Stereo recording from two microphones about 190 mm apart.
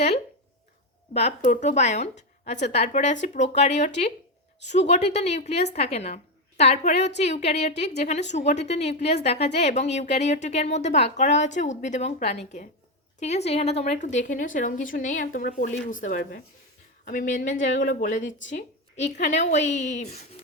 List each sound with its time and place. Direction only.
1.1 s a woman's voice: 35° left (ahead or behind)